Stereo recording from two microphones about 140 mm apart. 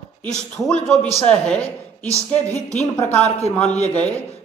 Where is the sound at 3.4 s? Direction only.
55° left (ahead or behind).